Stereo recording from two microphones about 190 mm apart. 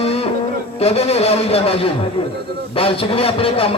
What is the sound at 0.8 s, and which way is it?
A man's voice, 30° left (ahead or behind).